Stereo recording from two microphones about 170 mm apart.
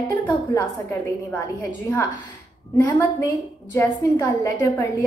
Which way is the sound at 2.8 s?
15° left (ahead or behind).